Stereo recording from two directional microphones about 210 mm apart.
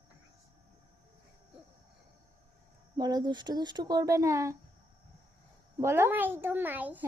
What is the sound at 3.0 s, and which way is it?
Speech, 20° right (ahead or behind).